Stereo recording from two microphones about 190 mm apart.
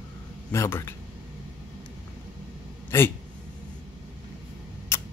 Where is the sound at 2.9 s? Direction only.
15° left (ahead or behind).